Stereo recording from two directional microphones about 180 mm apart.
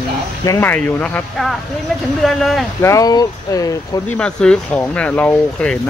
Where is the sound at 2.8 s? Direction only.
20° left (ahead or behind).